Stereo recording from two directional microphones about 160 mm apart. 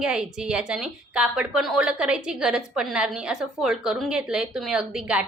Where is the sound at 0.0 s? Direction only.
5° right (ahead or behind).